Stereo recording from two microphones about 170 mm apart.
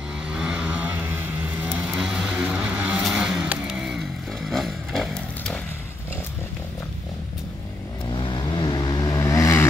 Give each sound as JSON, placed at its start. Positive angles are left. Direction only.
{"t": 0.4, "sound": "vehicle", "side_deg": -5}
{"t": 4.5, "sound": "motorcycle", "side_deg": 0}
{"t": 8.1, "sound": "vehicle", "side_deg": 25}